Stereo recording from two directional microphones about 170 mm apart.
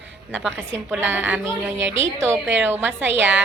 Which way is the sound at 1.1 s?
10° right (ahead or behind).